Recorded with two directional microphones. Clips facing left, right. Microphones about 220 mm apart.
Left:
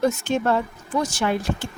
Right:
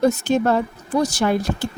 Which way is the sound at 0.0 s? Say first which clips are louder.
Right 4 dB; 35° right (ahead or behind).